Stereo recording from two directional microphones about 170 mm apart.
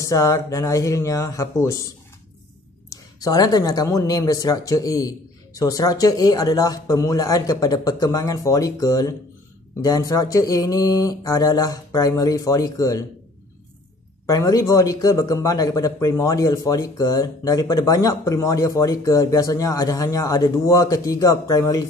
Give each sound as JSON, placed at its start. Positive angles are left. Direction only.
{"t": 0.0, "sound": "a man's voice", "side_deg": 20}
{"t": 14.2, "sound": "a man's voice", "side_deg": 20}